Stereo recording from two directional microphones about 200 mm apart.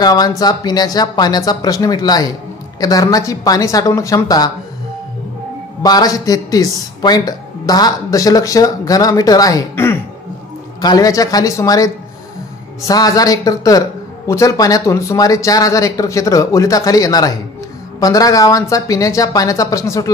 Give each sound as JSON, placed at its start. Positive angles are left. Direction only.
{"t": 0.0, "sound": "speech", "side_deg": 20}
{"t": 5.8, "sound": "speech", "side_deg": 20}